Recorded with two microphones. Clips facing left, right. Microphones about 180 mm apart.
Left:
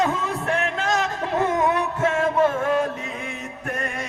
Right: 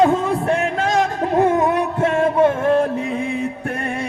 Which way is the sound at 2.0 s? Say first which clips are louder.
Right 4 dB; 30° right (ahead or behind).